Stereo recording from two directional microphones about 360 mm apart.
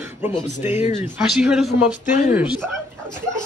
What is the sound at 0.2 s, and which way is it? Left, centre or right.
Speech, centre.